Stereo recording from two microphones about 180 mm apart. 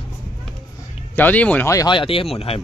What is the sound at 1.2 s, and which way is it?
Speech, 10° left (ahead or behind).